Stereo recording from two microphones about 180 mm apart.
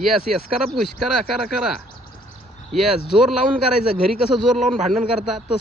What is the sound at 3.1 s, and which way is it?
Speech, centre (ahead or behind).